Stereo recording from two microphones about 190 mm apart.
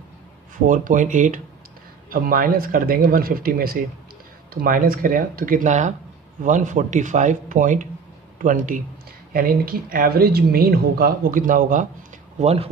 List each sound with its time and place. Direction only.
0.7 s speech: 45° right (ahead or behind)
12.4 s speech: 35° right (ahead or behind)